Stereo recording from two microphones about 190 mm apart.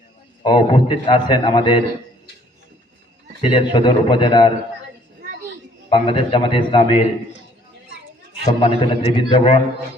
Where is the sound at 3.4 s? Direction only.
25° left (ahead or behind).